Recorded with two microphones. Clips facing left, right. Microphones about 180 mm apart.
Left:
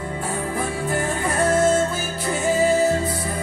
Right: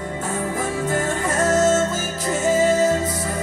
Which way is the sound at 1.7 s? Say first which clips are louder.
Right 1 dB; 45° right (ahead or behind).